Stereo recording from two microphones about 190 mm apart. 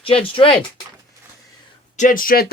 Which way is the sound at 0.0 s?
30° left (ahead or behind).